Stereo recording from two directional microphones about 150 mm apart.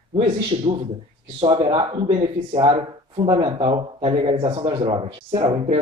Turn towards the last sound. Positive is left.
turn(degrees=-35)  # may be behind; listen again after turning